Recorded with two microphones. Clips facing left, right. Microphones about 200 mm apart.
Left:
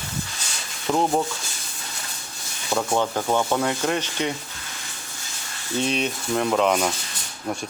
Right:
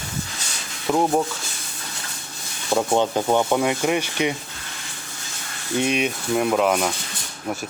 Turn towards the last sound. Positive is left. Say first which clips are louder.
# right 1 dB
turn(degrees=-5)  # may be behind; listen again after turning